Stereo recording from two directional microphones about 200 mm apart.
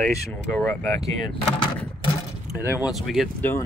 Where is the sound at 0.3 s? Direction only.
15° left (ahead or behind).